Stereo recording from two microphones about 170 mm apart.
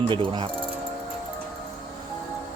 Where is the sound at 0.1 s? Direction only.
30° right (ahead or behind).